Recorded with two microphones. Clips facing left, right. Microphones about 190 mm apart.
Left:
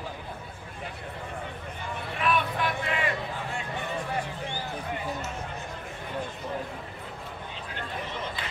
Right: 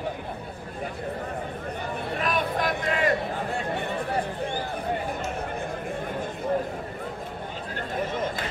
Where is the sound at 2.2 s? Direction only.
40° right (ahead or behind).